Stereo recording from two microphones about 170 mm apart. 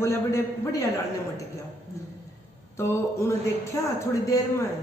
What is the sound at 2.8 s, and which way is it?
Speech, 15° left (ahead or behind).